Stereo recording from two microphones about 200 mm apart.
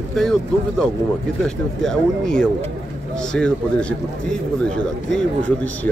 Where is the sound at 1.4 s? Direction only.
5° left (ahead or behind).